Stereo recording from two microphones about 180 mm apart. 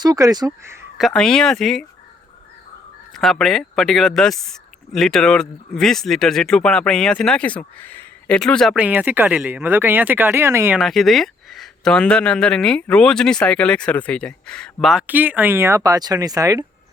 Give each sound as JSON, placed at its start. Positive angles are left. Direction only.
{"t": 0.0, "sound": "speech", "side_deg": -20}
{"t": 0.9, "sound": "speech", "side_deg": 0}
{"t": 3.1, "sound": "speech", "side_deg": 0}
{"t": 10.8, "sound": "speech", "side_deg": 0}